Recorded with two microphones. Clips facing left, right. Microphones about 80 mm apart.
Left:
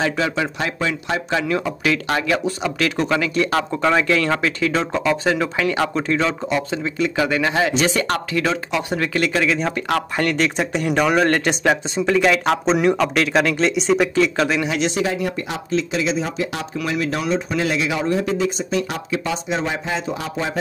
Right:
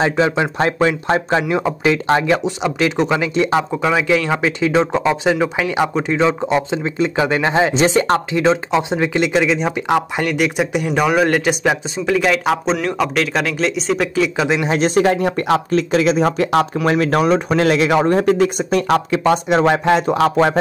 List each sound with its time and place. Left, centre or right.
0.0 s speech: right
1.5 s speech: right
3.7 s speech: centre
14.5 s speech: right
14.8 s speech: right